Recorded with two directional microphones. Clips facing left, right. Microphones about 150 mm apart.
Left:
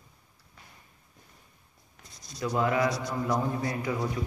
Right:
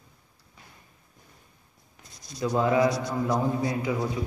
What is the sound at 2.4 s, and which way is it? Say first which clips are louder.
A man's voice: right 4 dB; 25° right (ahead or behind).